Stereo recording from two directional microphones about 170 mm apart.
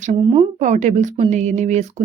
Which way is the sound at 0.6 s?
45° right (ahead or behind).